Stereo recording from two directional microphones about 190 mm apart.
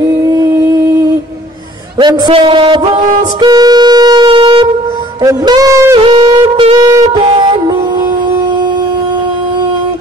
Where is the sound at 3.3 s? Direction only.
20° right (ahead or behind).